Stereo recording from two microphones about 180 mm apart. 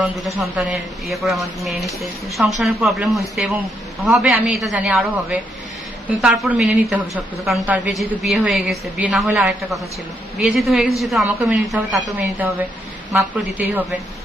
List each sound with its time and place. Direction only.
0.0 s a man's voice: 15° right (ahead or behind)
0.6 s a woman's voice: centre (ahead or behind)